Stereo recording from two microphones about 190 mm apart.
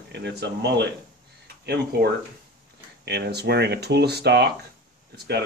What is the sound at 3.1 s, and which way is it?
Speech, 60° right (ahead or behind).